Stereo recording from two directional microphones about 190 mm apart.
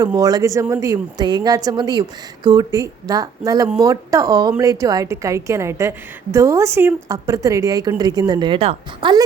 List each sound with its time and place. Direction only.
0.0 s a woman's voice: 20° right (ahead or behind)